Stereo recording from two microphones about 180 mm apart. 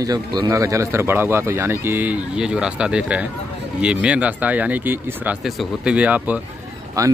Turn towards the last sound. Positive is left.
turn(degrees=-20)  # may be behind; listen again after turning